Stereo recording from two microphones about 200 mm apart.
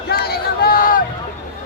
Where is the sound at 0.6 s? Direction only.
45° left (ahead or behind).